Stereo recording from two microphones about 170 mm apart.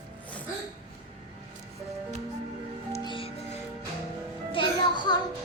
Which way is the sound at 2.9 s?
30° left (ahead or behind).